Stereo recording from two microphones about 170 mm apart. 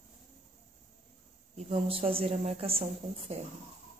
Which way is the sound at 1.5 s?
35° right (ahead or behind).